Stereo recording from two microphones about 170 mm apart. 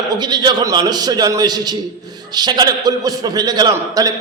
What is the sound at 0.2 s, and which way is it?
A man's voice, 25° right (ahead or behind).